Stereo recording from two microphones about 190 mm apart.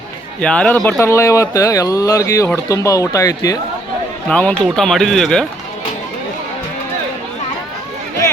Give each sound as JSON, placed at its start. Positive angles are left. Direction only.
{"t": 0.4, "sound": "speech", "side_deg": 5}
{"t": 4.3, "sound": "speech", "side_deg": 5}